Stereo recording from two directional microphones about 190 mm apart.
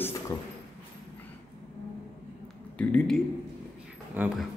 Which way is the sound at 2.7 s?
5° left (ahead or behind).